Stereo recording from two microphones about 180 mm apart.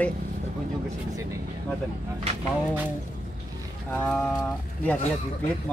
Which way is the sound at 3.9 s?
10° left (ahead or behind).